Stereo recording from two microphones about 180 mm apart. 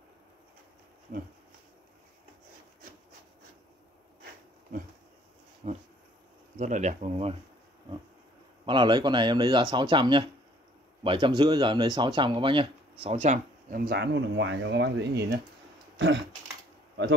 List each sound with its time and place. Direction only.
1.1 s a sound: 50° right (ahead or behind)
5.6 s dog: 40° right (ahead or behind)
6.6 s speech: 45° right (ahead or behind)
8.6 s speech: 25° right (ahead or behind); by 15.4 s 65° right (ahead or behind)